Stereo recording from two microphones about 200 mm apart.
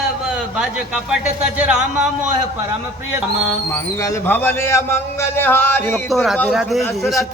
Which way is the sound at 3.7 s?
15° left (ahead or behind).